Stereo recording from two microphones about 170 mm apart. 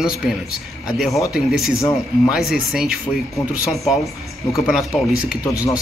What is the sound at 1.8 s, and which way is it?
Speech, 20° left (ahead or behind).